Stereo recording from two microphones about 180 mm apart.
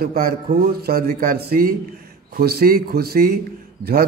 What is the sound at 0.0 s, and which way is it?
Speech, 55° right (ahead or behind).